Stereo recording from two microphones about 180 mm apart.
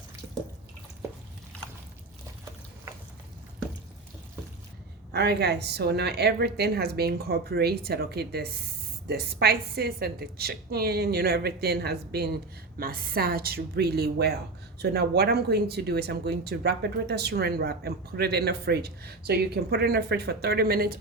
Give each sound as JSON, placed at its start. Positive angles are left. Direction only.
{"t": 5.1, "sound": "speech", "side_deg": -65}